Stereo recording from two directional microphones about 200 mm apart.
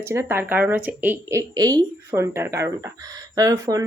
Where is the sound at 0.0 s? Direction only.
15° right (ahead or behind).